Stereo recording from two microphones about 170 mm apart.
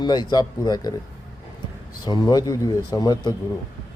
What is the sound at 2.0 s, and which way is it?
A man's voice, 25° left (ahead or behind).